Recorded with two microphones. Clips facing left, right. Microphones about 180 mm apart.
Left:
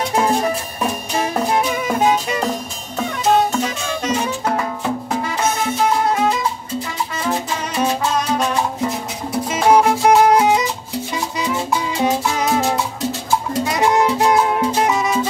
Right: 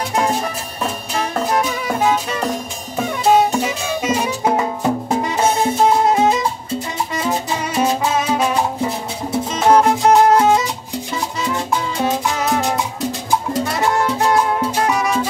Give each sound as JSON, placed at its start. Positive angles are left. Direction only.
{"t": 3.3, "sound": "music", "side_deg": -10}
{"t": 5.4, "sound": "music", "side_deg": -25}
{"t": 7.8, "sound": "music", "side_deg": -5}
{"t": 9.5, "sound": "music", "side_deg": 10}
{"t": 13.7, "sound": "music", "side_deg": 15}